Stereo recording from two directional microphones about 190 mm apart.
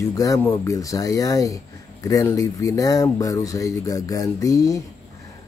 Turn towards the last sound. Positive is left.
turn(degrees=15)  # may be behind; listen again after turning